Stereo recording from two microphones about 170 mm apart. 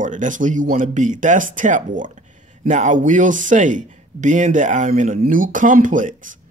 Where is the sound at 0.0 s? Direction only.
50° right (ahead or behind).